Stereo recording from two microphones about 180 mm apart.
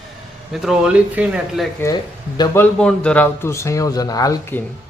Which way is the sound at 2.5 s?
5° left (ahead or behind).